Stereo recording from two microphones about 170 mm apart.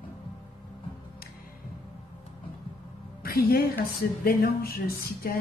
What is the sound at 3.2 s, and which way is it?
Speech, 65° left (ahead or behind).